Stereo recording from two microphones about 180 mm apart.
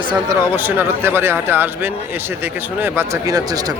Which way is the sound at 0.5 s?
10° right (ahead or behind).